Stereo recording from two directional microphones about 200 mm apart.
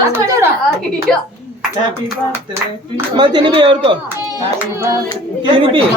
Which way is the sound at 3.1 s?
20° right (ahead or behind).